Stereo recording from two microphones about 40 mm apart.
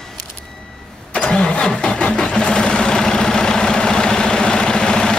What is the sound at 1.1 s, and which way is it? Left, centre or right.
Engine starting, left.